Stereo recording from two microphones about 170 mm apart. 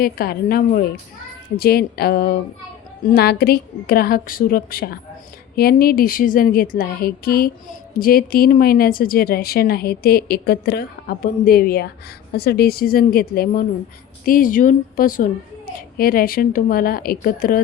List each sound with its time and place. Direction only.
0.0 s speech: 60° left (ahead or behind)